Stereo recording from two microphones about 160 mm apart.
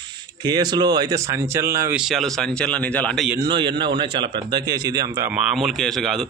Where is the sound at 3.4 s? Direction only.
30° right (ahead or behind).